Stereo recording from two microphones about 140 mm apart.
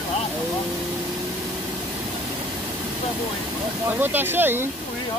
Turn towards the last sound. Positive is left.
turn(degrees=-15)  # may be behind; listen again after turning